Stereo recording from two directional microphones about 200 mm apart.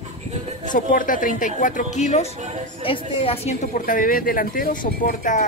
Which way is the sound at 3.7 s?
45° left (ahead or behind).